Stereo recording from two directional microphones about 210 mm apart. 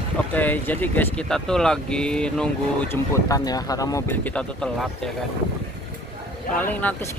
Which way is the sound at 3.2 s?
15° left (ahead or behind).